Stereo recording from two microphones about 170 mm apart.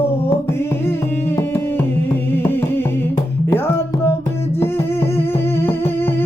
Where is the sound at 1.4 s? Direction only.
15° left (ahead or behind).